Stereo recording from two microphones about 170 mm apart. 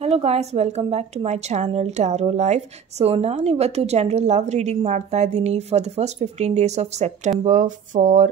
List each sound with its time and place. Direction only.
0.0 s a woman's voice: 35° right (ahead or behind)